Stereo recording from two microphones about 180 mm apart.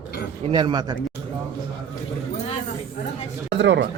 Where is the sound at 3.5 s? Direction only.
75° right (ahead or behind).